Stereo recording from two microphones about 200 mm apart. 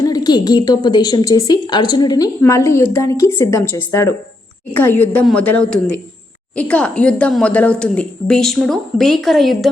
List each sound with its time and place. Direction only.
0.0 s a woman's voice: 20° left (ahead or behind); by 9.6 s centre (ahead or behind)